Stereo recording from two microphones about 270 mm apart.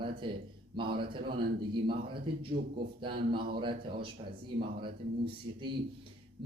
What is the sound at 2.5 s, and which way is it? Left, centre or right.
Speech, right.